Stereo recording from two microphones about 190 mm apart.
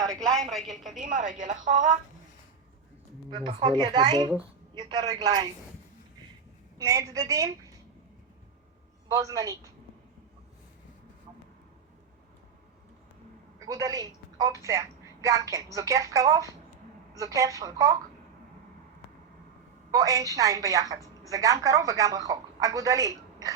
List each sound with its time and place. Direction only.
0.0 s a woman's voice: 5° left (ahead or behind)
0.9 s a woman's voice: 45° right (ahead or behind)
3.2 s speech: 20° right (ahead or behind)
6.7 s a woman's voice: 15° right (ahead or behind)
9.0 s speech: 15° right (ahead or behind)
13.7 s a woman's voice: 20° right (ahead or behind)
19.9 s a woman's voice: 15° right (ahead or behind)